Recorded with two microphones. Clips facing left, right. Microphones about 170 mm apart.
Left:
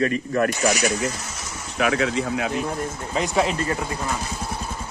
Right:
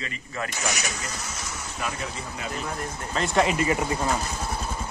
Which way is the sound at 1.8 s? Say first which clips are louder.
Left 12 dB; 90° left.